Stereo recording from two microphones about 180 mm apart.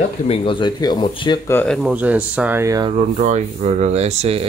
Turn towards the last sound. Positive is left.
turn(degrees=-35)  # may be behind; listen again after turning